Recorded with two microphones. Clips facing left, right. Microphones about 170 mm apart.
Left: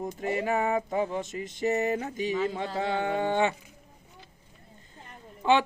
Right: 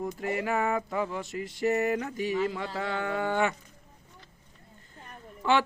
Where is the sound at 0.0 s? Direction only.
20° left (ahead or behind).